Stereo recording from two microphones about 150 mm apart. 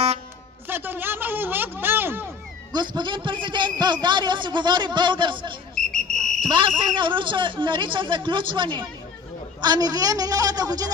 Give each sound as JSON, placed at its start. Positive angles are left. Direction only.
{"t": 0.7, "sound": "speech", "side_deg": -15}
{"t": 2.7, "sound": "a man's voice", "side_deg": -30}
{"t": 5.8, "sound": "a sound", "side_deg": 5}
{"t": 6.8, "sound": "a man's voice", "side_deg": -35}